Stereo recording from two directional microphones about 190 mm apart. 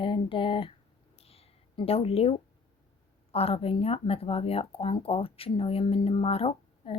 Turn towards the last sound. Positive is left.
turn(degrees=30)  # may be behind; listen again after turning